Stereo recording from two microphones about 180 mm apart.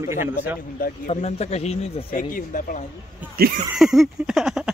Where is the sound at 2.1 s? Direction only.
50° left (ahead or behind).